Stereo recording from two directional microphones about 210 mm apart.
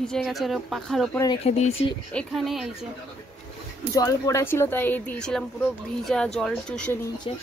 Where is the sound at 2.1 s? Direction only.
Centre (ahead or behind).